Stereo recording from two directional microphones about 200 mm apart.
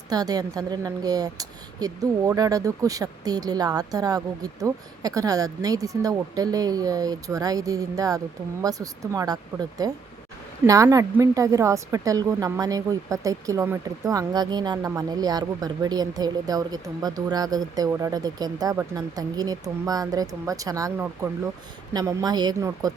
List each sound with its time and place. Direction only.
0.1 s a woman's voice: 20° right (ahead or behind)